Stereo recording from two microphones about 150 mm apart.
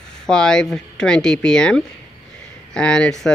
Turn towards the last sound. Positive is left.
turn(degrees=5)  # may be behind; listen again after turning